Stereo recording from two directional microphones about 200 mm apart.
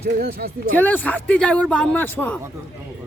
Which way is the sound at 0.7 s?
10° left (ahead or behind).